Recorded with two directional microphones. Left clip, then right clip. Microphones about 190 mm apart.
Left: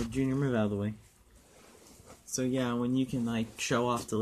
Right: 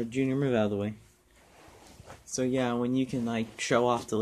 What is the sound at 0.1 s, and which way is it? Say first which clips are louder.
Speech: right 4 dB; 25° left (ahead or behind).